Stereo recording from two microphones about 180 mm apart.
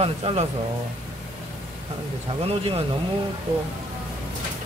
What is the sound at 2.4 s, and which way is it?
Speech, 35° right (ahead or behind).